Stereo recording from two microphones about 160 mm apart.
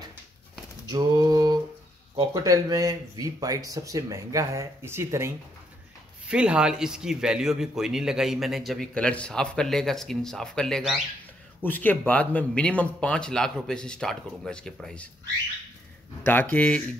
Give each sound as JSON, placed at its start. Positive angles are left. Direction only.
{"t": 0.9, "sound": "a sound", "side_deg": -25}
{"t": 2.1, "sound": "a man's voice", "side_deg": -20}
{"t": 16.3, "sound": "speech", "side_deg": 10}